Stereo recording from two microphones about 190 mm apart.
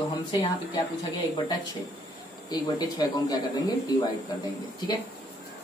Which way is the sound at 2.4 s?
20° left (ahead or behind).